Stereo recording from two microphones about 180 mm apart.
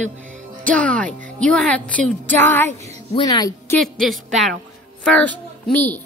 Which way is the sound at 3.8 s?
Centre (ahead or behind).